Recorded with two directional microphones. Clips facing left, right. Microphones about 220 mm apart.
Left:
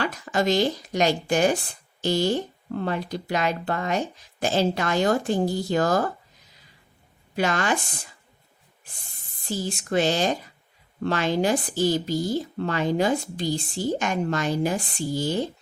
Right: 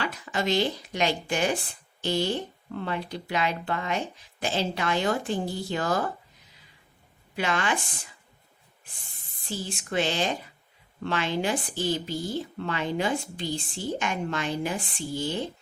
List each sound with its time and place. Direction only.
0.0 s speech: 45° left (ahead or behind)
7.3 s a woman's voice: 40° left (ahead or behind)
9.5 s a woman's voice: 40° left (ahead or behind)